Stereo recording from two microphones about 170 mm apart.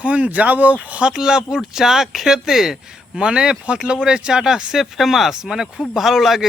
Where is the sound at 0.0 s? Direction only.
10° right (ahead or behind).